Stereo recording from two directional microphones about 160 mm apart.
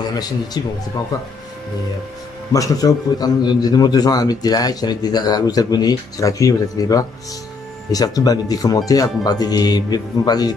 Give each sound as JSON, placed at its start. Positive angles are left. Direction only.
{"t": 0.0, "sound": "a man's voice", "side_deg": 25}
{"t": 2.5, "sound": "a man's voice", "side_deg": 20}